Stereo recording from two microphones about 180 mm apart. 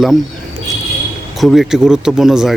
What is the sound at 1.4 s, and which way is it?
Speech, centre (ahead or behind).